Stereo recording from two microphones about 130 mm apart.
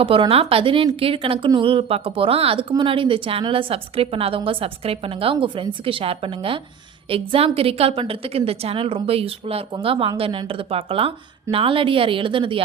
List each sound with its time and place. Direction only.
0.0 s speech: 45° right (ahead or behind)